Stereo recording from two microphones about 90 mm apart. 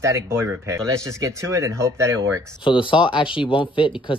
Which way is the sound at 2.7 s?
65° left (ahead or behind).